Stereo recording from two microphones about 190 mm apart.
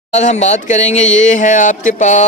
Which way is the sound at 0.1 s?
35° left (ahead or behind).